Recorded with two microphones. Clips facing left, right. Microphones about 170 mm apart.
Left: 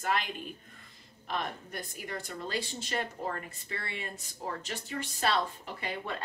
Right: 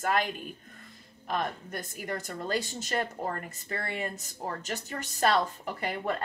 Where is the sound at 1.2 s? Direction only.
50° right (ahead or behind).